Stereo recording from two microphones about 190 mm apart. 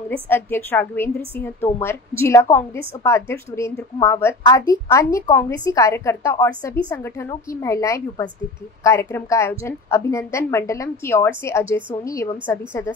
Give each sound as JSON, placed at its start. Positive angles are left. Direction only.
{"t": 0.1, "sound": "a woman's voice", "side_deg": 10}